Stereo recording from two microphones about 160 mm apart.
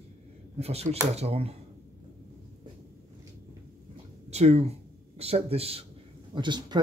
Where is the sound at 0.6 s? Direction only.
40° right (ahead or behind).